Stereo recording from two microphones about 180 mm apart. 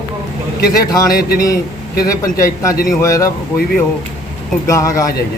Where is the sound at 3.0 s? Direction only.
15° left (ahead or behind).